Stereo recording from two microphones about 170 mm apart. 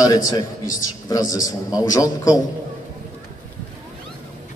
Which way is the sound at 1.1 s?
20° left (ahead or behind).